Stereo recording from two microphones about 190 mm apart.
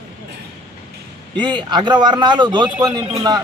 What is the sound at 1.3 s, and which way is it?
A man's voice, 25° right (ahead or behind).